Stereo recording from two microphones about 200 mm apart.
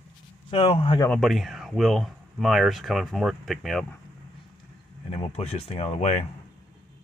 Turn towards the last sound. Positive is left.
turn(degrees=30)  # may be behind; listen again after turning